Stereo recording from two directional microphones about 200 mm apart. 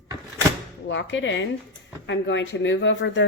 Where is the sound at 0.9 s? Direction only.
65° left (ahead or behind).